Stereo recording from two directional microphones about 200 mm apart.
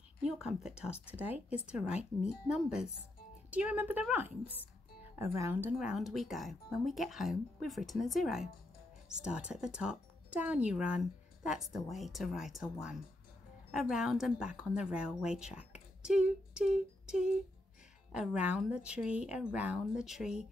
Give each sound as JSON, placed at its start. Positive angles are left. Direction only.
{"t": 0.2, "sound": "a woman's voice", "side_deg": 0}